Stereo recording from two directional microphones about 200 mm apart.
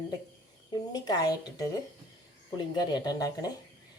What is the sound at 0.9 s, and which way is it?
Speech, 20° left (ahead or behind).